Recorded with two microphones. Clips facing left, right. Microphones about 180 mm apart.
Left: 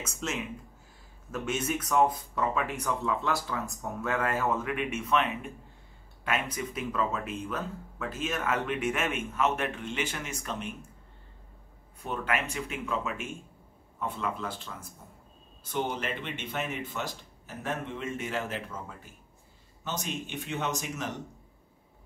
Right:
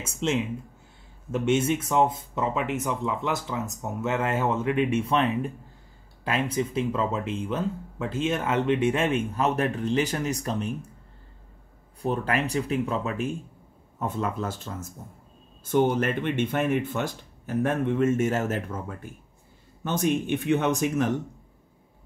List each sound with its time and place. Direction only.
0.0 s speech: 30° right (ahead or behind)
12.0 s speech: 35° right (ahead or behind); by 21.2 s 55° right (ahead or behind)